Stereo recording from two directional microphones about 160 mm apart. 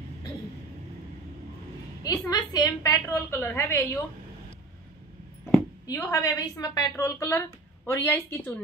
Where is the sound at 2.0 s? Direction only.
25° left (ahead or behind).